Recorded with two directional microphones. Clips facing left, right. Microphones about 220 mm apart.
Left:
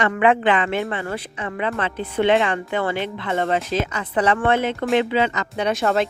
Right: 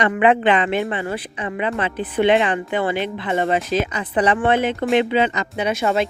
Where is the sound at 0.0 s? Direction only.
20° right (ahead or behind).